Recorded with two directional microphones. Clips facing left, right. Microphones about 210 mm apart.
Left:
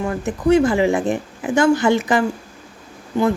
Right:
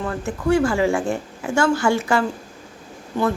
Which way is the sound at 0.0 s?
15° left (ahead or behind).